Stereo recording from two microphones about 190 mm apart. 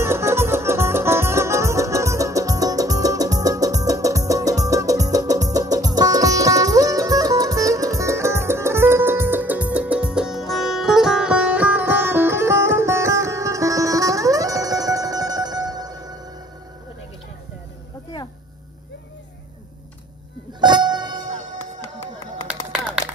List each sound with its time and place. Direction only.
0.0 s music: 15° right (ahead or behind)
20.6 s music: 25° right (ahead or behind)
22.7 s run: 5° right (ahead or behind)